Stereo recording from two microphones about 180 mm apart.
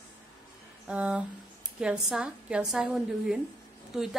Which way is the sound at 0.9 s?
5° right (ahead or behind).